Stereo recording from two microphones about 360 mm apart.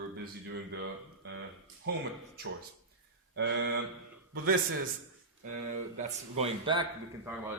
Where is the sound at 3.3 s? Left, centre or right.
Right.